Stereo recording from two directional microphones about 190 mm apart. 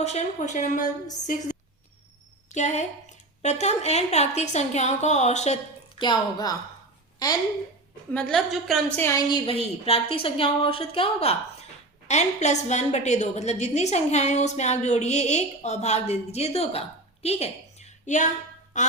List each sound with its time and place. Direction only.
0.0 s a woman's voice: 35° left (ahead or behind)
6.0 s a woman's voice: 20° left (ahead or behind)
8.1 s a woman's voice: 5° left (ahead or behind)
9.5 s a woman's voice: 30° left (ahead or behind)
17.2 s a sound: 35° left (ahead or behind)
18.8 s a woman's voice: 40° left (ahead or behind)